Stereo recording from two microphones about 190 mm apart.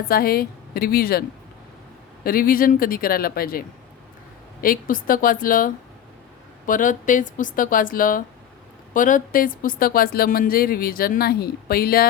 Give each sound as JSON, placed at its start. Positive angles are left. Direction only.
{"t": 0.1, "sound": "speech", "side_deg": 50}
{"t": 2.2, "sound": "speech", "side_deg": 50}
{"t": 4.6, "sound": "speech", "side_deg": 45}